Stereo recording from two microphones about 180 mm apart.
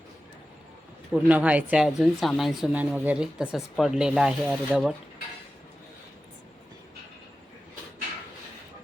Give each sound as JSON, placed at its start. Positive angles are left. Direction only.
{"t": 1.1, "sound": "speech", "side_deg": -10}